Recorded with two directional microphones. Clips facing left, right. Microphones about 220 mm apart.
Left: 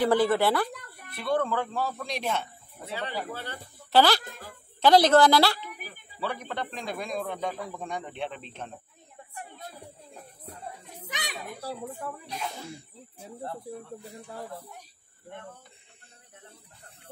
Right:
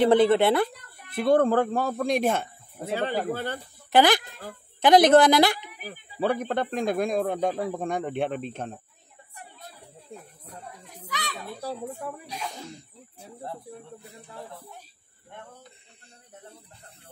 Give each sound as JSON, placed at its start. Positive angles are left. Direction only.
{"t": 0.0, "sound": "a woman's voice", "side_deg": -20}
{"t": 1.1, "sound": "speech", "side_deg": -50}
{"t": 3.9, "sound": "a woman's voice", "side_deg": -15}
{"t": 5.9, "sound": "speech", "side_deg": -50}
{"t": 9.3, "sound": "music", "side_deg": 50}
{"t": 10.4, "sound": "children playing", "side_deg": 25}
{"t": 12.0, "sound": "speech", "side_deg": 0}